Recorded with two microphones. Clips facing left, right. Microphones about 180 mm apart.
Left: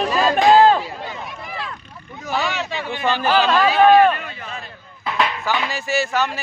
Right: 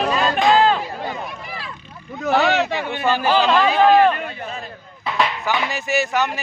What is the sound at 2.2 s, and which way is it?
Speech, 65° right (ahead or behind).